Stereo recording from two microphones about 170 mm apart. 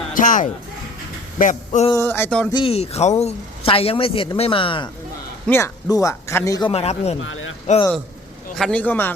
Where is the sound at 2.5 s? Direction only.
30° left (ahead or behind).